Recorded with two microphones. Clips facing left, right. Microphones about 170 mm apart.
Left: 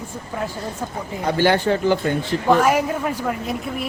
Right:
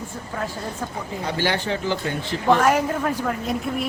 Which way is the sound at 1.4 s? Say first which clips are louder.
Left 7 dB; 50° left (ahead or behind).